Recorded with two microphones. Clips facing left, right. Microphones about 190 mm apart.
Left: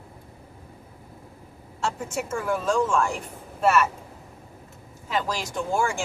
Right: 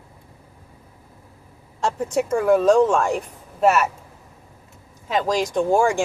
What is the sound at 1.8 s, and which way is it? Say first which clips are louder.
Speech: right 7 dB; 35° right (ahead or behind).